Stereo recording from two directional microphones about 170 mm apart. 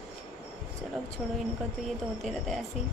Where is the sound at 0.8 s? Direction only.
Centre (ahead or behind).